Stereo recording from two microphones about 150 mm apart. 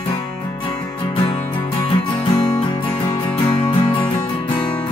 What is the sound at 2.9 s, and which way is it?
Music, 10° left (ahead or behind).